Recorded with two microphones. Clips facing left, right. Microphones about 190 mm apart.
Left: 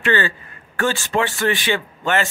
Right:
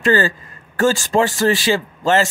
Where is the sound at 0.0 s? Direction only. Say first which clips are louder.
Right 4 dB; 40° right (ahead or behind).